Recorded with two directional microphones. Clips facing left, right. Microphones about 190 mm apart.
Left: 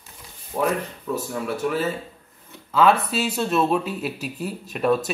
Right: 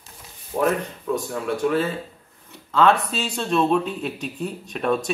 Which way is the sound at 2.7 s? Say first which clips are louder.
Even; 5° left (ahead or behind).